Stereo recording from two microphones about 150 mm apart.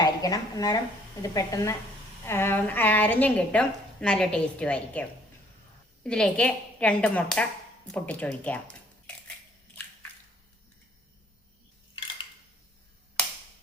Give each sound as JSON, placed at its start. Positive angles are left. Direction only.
{"t": 0.0, "sound": "a woman's voice", "side_deg": 25}